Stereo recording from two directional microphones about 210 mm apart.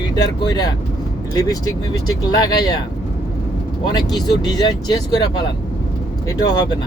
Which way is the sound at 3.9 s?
20° left (ahead or behind).